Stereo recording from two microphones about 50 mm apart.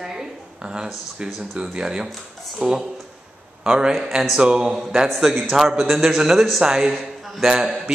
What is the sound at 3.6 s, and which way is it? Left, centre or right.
A woman's voice, centre.